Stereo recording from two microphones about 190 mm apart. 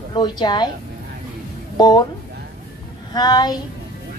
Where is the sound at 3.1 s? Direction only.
20° left (ahead or behind).